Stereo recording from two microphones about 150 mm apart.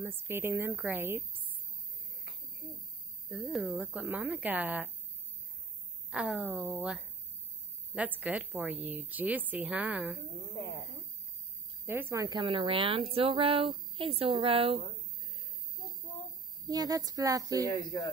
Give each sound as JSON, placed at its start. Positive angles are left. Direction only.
{"t": 0.0, "sound": "a woman's voice", "side_deg": -15}
{"t": 3.3, "sound": "a woman's voice", "side_deg": 0}
{"t": 6.0, "sound": "a woman's voice", "side_deg": -5}
{"t": 11.8, "sound": "a woman's voice", "side_deg": -15}
{"t": 12.4, "sound": "speech", "side_deg": -35}
{"t": 16.6, "sound": "speech", "side_deg": -25}